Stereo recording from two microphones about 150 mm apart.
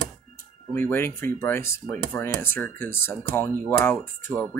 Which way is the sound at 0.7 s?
15° left (ahead or behind).